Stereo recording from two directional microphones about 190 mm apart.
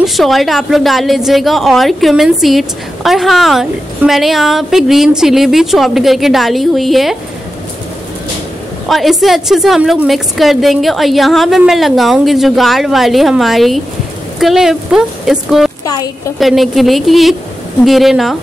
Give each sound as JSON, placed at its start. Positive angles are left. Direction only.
{"t": 0.0, "sound": "a woman's voice", "side_deg": 0}
{"t": 8.8, "sound": "a woman's voice", "side_deg": 0}
{"t": 15.8, "sound": "a sound", "side_deg": 20}
{"t": 16.3, "sound": "a woman's voice", "side_deg": 0}